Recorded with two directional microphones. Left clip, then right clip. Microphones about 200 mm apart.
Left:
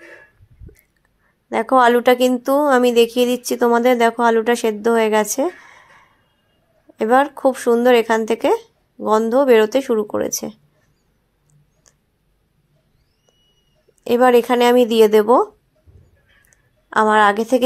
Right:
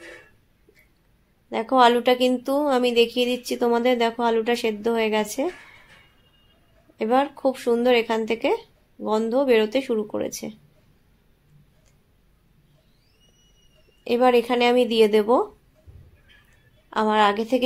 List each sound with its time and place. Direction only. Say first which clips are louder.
1.5 s a woman's voice: left 4 dB; 30° left (ahead or behind)
7.0 s a woman's voice: left 6 dB; 35° left (ahead or behind)
14.0 s a woman's voice: left 6 dB; 35° left (ahead or behind)
16.9 s a woman's voice: left 6 dB; 35° left (ahead or behind)